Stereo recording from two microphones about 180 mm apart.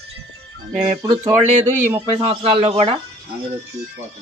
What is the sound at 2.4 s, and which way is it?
Speech, 30° right (ahead or behind).